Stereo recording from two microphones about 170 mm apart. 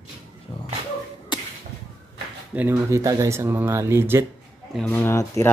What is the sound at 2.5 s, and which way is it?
Speech, 15° right (ahead or behind).